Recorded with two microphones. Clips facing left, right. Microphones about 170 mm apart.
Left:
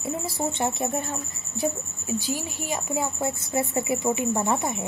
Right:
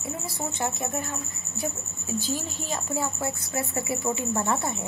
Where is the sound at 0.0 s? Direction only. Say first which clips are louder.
Left 5 dB; 25° left (ahead or behind).